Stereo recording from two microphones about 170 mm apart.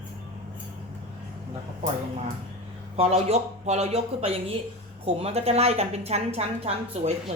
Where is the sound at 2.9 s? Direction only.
35° right (ahead or behind).